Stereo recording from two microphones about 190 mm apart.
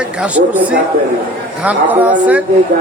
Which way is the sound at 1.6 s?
10° right (ahead or behind).